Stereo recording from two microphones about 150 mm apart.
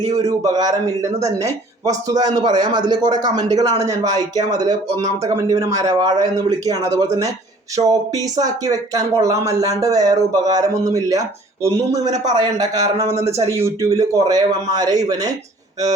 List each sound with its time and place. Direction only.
0.0 s speech: 25° right (ahead or behind)